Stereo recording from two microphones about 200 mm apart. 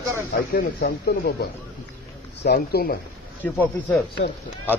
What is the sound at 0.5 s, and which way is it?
Speech, 55° left (ahead or behind).